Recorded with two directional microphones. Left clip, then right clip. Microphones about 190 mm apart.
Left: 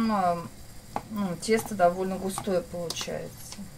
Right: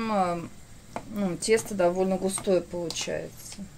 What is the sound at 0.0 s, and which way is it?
Speech, 50° right (ahead or behind).